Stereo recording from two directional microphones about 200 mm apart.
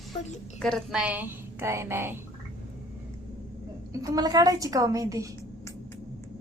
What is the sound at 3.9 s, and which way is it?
A woman's voice, 15° right (ahead or behind).